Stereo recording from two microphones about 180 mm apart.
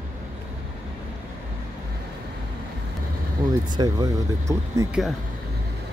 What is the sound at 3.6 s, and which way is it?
Speech, 20° right (ahead or behind).